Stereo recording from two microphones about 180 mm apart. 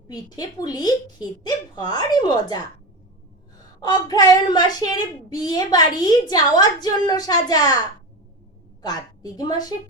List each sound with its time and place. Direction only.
0.1 s speech: 20° left (ahead or behind)
3.8 s speech: 20° left (ahead or behind)
8.8 s speech: 20° left (ahead or behind)